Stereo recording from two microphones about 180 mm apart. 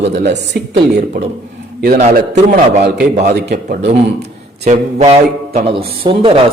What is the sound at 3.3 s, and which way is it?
Speech, 65° right (ahead or behind).